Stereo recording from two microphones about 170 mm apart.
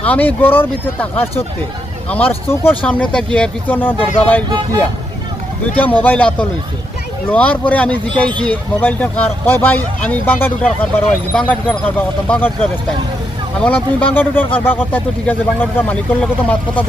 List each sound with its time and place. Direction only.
0.0 s speech: 10° left (ahead or behind)
2.0 s speech: 10° left (ahead or behind)
4.4 s speech: 25° right (ahead or behind)
5.7 s speech: 10° left (ahead or behind)